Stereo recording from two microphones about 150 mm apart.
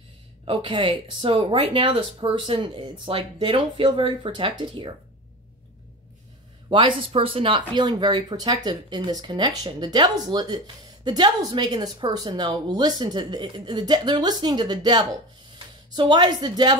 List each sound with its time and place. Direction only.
0.5 s speech: 35° right (ahead or behind)
6.7 s a woman's voice: 35° right (ahead or behind)